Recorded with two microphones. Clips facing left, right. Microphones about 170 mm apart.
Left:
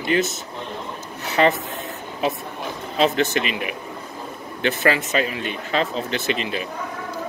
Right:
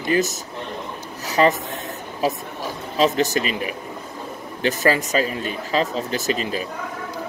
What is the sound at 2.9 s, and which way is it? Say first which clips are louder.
Speech: right 1 dB; 40° right (ahead or behind).